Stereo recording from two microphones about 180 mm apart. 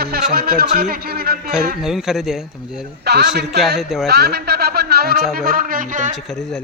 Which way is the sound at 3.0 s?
65° right (ahead or behind).